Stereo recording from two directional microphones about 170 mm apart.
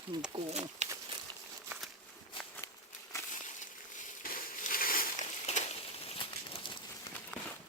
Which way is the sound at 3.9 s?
50° left (ahead or behind).